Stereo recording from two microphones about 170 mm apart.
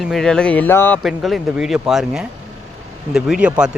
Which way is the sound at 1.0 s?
Centre (ahead or behind).